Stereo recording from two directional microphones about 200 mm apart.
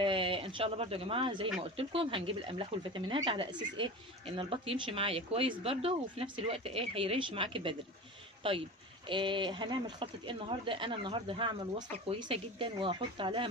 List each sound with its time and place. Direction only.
0.0 s speech: 25° right (ahead or behind)